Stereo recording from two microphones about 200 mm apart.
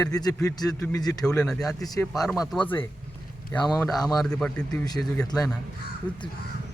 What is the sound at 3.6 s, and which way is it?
Speech, 20° left (ahead or behind).